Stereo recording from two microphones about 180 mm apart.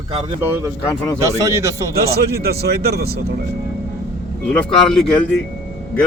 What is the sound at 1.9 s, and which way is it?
Speech, 60° right (ahead or behind).